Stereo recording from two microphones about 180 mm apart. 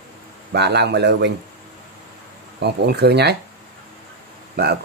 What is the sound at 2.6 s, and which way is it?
Speech, 65° right (ahead or behind).